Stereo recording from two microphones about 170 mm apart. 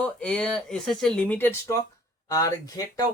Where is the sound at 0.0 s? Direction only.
5° left (ahead or behind).